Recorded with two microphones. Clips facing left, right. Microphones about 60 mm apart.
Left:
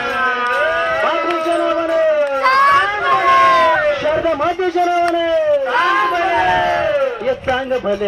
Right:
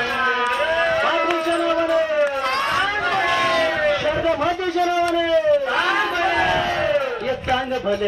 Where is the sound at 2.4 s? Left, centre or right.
Left.